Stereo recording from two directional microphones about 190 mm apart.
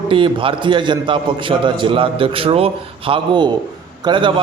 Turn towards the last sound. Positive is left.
turn(degrees=-25)  # may be behind; listen again after turning